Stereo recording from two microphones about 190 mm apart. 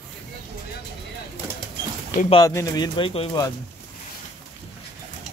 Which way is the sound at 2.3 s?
20° left (ahead or behind).